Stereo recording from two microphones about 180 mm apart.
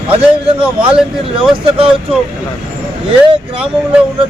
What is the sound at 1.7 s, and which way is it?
Speech, 30° right (ahead or behind).